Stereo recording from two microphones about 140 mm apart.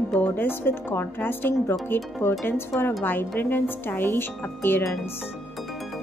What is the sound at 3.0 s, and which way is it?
Speech, 15° left (ahead or behind).